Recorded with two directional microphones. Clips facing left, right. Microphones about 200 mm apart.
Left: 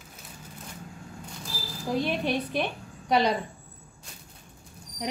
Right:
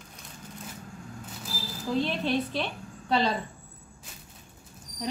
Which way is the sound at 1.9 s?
15° left (ahead or behind).